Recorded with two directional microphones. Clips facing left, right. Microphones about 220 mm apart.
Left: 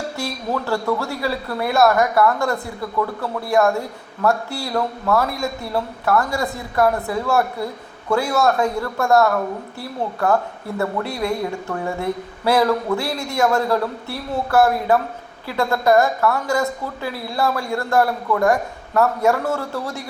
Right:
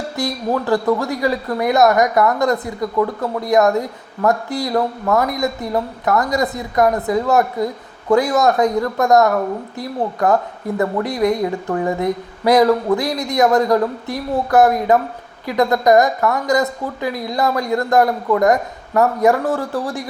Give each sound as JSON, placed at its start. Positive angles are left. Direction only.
{"t": 0.2, "sound": "speech", "side_deg": -15}